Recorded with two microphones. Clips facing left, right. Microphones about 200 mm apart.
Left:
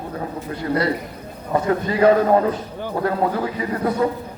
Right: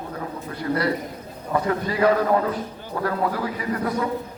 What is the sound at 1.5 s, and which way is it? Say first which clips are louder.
A man's voice: left 3 dB; 30° left (ahead or behind).